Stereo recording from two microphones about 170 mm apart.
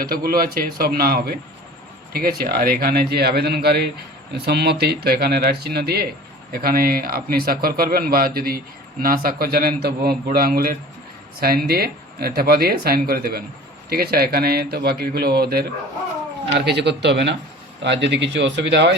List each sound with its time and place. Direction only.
0.0 s speech: 60° right (ahead or behind)
16.6 s speech: 85° right